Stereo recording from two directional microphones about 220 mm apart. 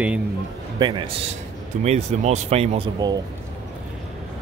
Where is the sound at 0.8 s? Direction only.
20° right (ahead or behind).